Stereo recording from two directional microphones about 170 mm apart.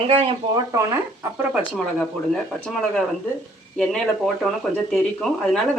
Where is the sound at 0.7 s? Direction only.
15° right (ahead or behind).